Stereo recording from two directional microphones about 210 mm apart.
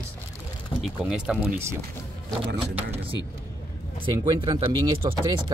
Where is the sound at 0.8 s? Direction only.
5° right (ahead or behind).